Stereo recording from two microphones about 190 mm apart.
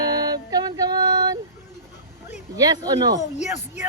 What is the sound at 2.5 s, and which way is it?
Speech, 20° right (ahead or behind).